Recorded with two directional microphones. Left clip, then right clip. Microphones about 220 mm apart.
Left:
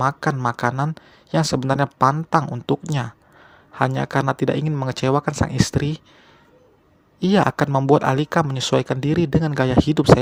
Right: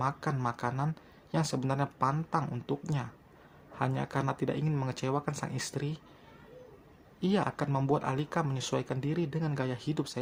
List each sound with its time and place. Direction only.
0.0 s speech: 35° left (ahead or behind)
7.2 s speech: 35° left (ahead or behind)